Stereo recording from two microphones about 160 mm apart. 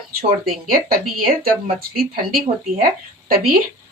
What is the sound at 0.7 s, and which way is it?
Speech, 65° right (ahead or behind).